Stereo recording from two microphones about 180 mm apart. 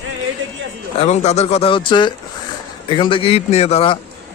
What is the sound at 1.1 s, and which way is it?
A man's voice, 35° left (ahead or behind).